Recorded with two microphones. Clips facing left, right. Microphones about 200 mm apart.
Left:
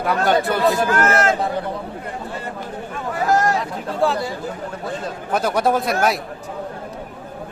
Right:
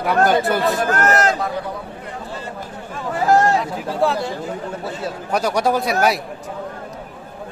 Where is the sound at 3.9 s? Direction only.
Centre (ahead or behind).